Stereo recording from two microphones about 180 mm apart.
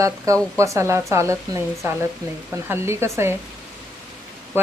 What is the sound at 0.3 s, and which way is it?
Speech, 15° right (ahead or behind).